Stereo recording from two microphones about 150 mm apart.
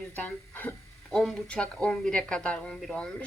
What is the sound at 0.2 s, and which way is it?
A woman's voice, 10° left (ahead or behind).